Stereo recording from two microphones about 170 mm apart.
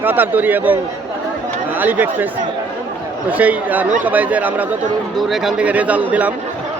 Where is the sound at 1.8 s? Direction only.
10° right (ahead or behind).